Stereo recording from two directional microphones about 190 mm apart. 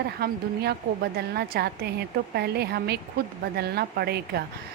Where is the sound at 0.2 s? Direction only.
55° right (ahead or behind).